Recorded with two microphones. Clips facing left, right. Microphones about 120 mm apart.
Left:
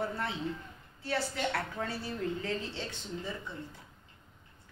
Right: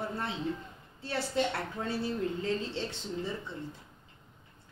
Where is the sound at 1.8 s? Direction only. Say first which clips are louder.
Right 3 dB; 20° right (ahead or behind).